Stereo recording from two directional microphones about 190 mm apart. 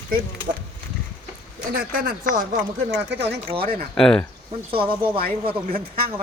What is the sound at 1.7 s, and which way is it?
Speech, 50° right (ahead or behind).